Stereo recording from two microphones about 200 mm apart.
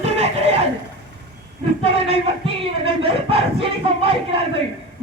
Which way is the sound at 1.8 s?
30° right (ahead or behind).